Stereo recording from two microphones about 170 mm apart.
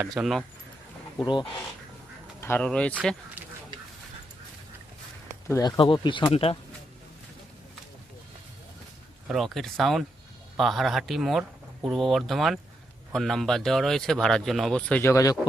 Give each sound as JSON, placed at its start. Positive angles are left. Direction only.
{"t": 0.1, "sound": "speech", "side_deg": 0}
{"t": 1.2, "sound": "speech", "side_deg": 25}
{"t": 2.4, "sound": "speech", "side_deg": 10}
{"t": 5.5, "sound": "speech", "side_deg": 20}
{"t": 5.7, "sound": "speech", "side_deg": 30}
{"t": 9.3, "sound": "speech", "side_deg": 0}